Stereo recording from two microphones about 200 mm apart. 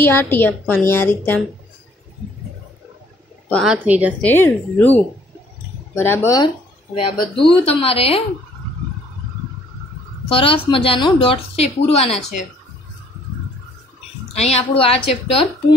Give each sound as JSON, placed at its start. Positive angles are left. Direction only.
{"t": 0.0, "sound": "a woman's voice", "side_deg": 10}
{"t": 3.6, "sound": "a woman's voice", "side_deg": -10}
{"t": 4.2, "sound": "a woman's voice", "side_deg": 10}
{"t": 10.2, "sound": "a woman's voice", "side_deg": 25}
{"t": 14.3, "sound": "a woman's voice", "side_deg": 30}